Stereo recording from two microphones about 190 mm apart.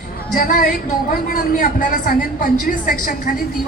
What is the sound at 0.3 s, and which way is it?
A woman's voice, 45° left (ahead or behind).